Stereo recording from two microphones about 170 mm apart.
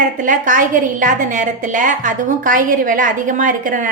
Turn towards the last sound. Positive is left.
turn(degrees=-50)  # may be behind; listen again after turning